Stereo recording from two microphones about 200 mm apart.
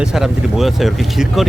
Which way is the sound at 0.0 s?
5° right (ahead or behind).